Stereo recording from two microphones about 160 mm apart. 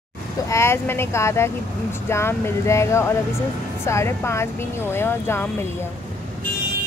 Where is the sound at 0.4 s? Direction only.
20° left (ahead or behind).